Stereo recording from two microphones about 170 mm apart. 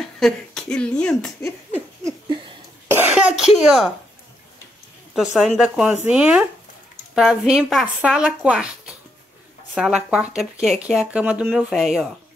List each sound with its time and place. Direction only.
0.0 s speech: 5° left (ahead or behind)
2.0 s a sound: 25° right (ahead or behind)
2.9 s cough: 10° right (ahead or behind)
3.5 s speech: centre (ahead or behind)
5.1 s speech: centre (ahead or behind)